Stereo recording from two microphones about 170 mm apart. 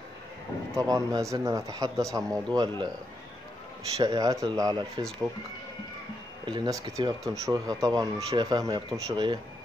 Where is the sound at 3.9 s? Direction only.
25° right (ahead or behind).